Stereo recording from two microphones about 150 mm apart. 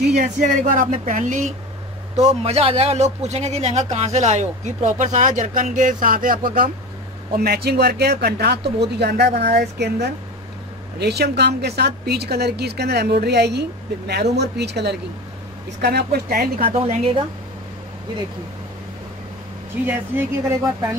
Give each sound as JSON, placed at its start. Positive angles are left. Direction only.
{"t": 0.1, "sound": "speech", "side_deg": -55}
{"t": 2.1, "sound": "speech", "side_deg": -45}
{"t": 7.3, "sound": "a woman's voice", "side_deg": -90}
{"t": 16.7, "sound": "speech", "side_deg": -45}
{"t": 19.9, "sound": "speech", "side_deg": -15}